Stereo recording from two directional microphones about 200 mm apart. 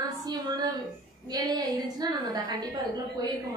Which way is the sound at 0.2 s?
20° right (ahead or behind).